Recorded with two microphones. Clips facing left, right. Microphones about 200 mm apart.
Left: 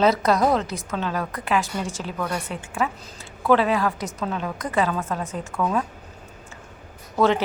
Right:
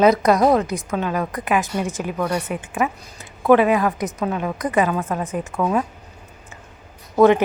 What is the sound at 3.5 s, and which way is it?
A woman's voice, 15° right (ahead or behind).